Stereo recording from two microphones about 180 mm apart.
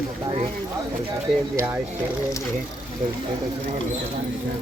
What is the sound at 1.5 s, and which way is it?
Speech, 10° right (ahead or behind).